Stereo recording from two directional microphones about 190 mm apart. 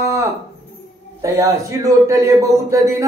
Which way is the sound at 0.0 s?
15° right (ahead or behind).